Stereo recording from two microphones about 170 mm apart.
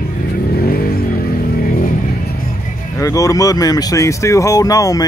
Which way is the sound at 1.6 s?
55° left (ahead or behind).